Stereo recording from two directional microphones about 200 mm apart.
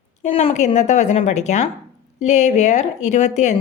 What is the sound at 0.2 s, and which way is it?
Speech, 30° left (ahead or behind).